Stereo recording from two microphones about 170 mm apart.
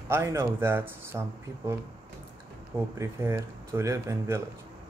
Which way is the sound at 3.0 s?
15° right (ahead or behind).